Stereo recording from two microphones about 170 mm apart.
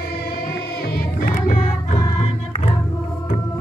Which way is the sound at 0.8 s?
60° left (ahead or behind).